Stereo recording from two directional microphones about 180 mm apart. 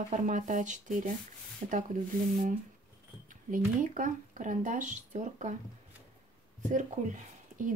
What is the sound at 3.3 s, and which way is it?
Speech, 45° right (ahead or behind).